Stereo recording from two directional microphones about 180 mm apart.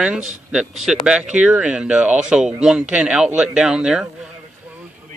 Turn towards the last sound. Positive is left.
turn(degrees=-5)  # may be behind; listen again after turning